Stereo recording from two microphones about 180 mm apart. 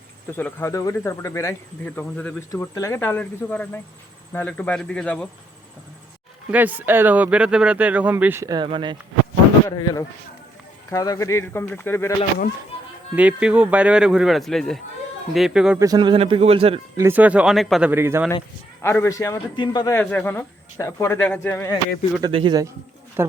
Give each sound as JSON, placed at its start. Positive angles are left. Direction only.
{"t": 0.3, "sound": "a man's voice", "side_deg": 10}
{"t": 2.5, "sound": "a man's voice", "side_deg": 20}
{"t": 6.5, "sound": "speech", "side_deg": -10}
{"t": 9.6, "sound": "a man's voice", "side_deg": 20}
{"t": 13.1, "sound": "speech", "side_deg": -5}
{"t": 15.8, "sound": "speech", "side_deg": -20}
{"t": 17.0, "sound": "speech", "side_deg": -10}
{"t": 18.8, "sound": "a man's voice", "side_deg": 15}
{"t": 20.0, "sound": "a man's voice", "side_deg": 10}
{"t": 22.2, "sound": "a man's voice", "side_deg": -25}